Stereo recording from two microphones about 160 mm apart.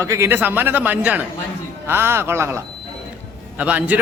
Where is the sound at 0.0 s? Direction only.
15° right (ahead or behind).